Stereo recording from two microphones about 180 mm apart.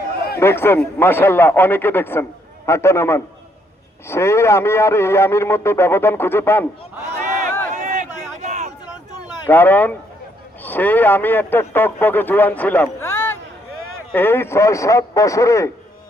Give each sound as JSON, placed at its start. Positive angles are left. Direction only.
{"t": 0.3, "sound": "a man's voice", "side_deg": 15}
{"t": 7.7, "sound": "a sound", "side_deg": -45}
{"t": 9.5, "sound": "a man's voice", "side_deg": 10}